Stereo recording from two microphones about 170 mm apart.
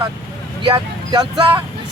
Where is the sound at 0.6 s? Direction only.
30° right (ahead or behind).